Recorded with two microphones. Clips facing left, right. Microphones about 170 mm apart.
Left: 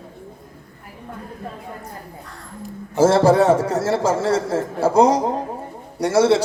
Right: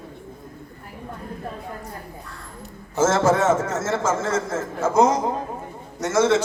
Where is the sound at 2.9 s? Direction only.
35° left (ahead or behind).